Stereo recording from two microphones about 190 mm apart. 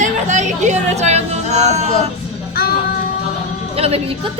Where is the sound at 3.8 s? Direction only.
30° right (ahead or behind).